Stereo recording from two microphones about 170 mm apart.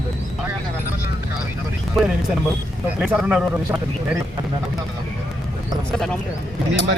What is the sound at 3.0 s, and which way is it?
Speech, 5° right (ahead or behind).